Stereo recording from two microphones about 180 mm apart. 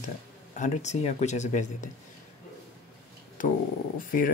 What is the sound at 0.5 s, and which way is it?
Speech, 40° left (ahead or behind).